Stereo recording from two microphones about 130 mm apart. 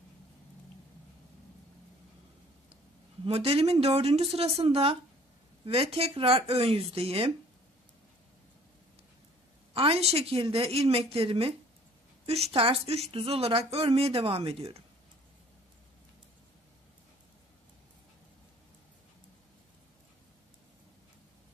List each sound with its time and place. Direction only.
3.3 s a woman's voice: 50° right (ahead or behind)
9.8 s a woman's voice: 50° right (ahead or behind)